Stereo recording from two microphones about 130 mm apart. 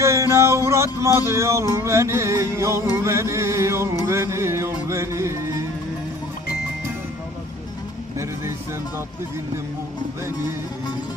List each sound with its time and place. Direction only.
0.0 s music: 20° right (ahead or behind)